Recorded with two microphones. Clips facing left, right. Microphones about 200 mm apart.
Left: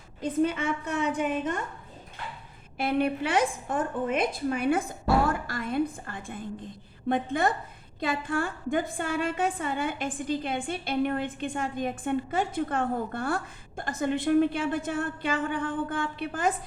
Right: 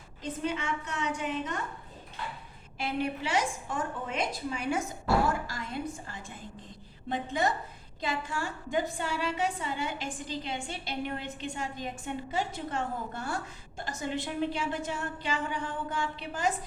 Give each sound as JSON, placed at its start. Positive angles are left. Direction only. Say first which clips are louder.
{"t": 0.2, "sound": "a woman's voice", "louder": "left 7 dB", "side_deg": 55}
{"t": 2.7, "sound": "a woman's voice", "louder": "left 6 dB", "side_deg": 55}